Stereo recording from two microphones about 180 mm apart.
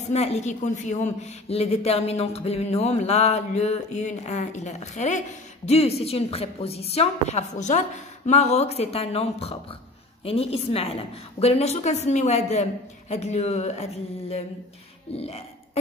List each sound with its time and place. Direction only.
0.1 s a woman's voice: 35° left (ahead or behind)
15.1 s throat clearing: 35° left (ahead or behind)